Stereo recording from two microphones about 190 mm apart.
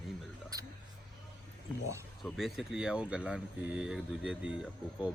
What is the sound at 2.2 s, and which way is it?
Speech, centre (ahead or behind).